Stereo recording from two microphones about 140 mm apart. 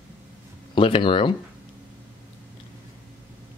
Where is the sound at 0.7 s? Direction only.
40° left (ahead or behind).